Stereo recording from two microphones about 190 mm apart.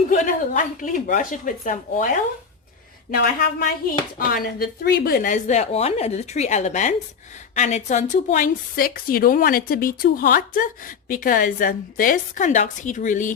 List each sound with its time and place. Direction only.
0.1 s a woman's voice: 45° left (ahead or behind)
3.1 s a woman's voice: 50° left (ahead or behind)